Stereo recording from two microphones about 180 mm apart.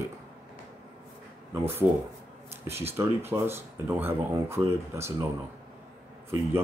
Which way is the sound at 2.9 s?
15° right (ahead or behind).